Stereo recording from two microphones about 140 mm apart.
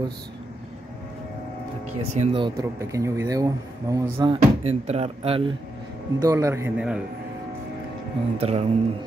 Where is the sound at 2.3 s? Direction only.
35° right (ahead or behind).